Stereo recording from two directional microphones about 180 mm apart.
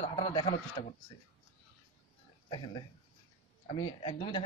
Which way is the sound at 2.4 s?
25° left (ahead or behind).